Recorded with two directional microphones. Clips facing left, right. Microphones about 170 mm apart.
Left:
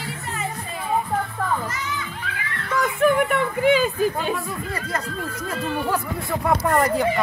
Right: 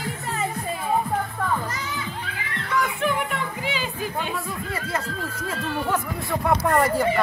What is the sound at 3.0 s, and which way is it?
Music, 50° left (ahead or behind).